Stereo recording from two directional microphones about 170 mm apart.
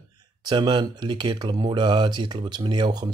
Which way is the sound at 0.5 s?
25° right (ahead or behind).